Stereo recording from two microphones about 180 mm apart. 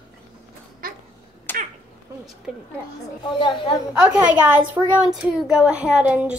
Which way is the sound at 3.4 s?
25° left (ahead or behind).